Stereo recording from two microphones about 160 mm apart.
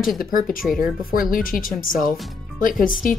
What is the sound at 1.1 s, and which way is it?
Speech, 60° left (ahead or behind).